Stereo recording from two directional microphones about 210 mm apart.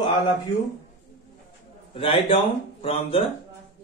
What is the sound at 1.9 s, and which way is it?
Speech, 25° left (ahead or behind).